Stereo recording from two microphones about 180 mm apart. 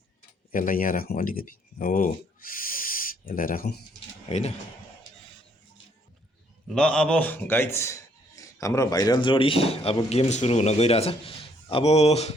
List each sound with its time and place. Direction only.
0.5 s speech: 50° left (ahead or behind)
4.3 s a man's voice: 35° left (ahead or behind)
6.7 s a man's voice: 5° left (ahead or behind); by 12.3 s 35° left (ahead or behind)